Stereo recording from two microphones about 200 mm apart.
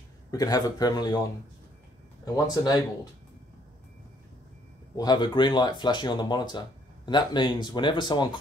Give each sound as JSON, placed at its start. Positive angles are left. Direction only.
{"t": 0.3, "sound": "speech", "side_deg": 20}
{"t": 2.3, "sound": "speech", "side_deg": 20}
{"t": 4.9, "sound": "speech", "side_deg": 20}